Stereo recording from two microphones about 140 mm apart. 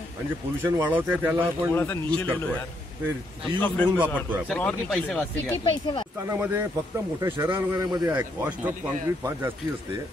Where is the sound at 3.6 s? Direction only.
10° left (ahead or behind).